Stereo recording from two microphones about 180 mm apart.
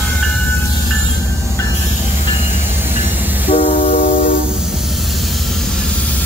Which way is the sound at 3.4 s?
35° left (ahead or behind).